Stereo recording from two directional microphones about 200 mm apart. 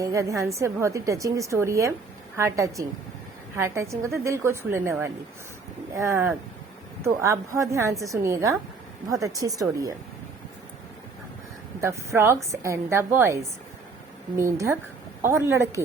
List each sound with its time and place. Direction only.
0.0 s a woman's voice: 15° right (ahead or behind)
11.8 s a woman's voice: 15° right (ahead or behind)